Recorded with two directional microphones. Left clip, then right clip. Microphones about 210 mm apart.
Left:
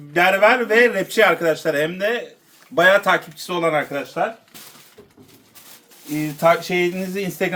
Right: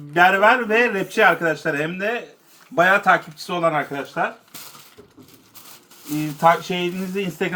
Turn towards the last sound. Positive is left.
turn(degrees=25)  # may be behind; listen again after turning